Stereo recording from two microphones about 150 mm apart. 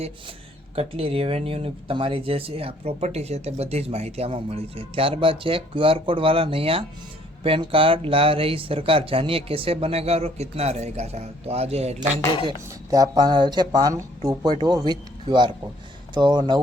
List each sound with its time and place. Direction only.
0.8 s speech: 40° right (ahead or behind)
12.5 s speech: 25° right (ahead or behind)